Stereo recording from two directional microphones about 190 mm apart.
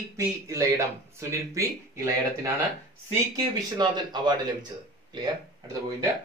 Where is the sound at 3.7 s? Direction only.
25° right (ahead or behind).